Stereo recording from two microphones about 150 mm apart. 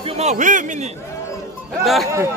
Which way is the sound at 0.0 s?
45° right (ahead or behind).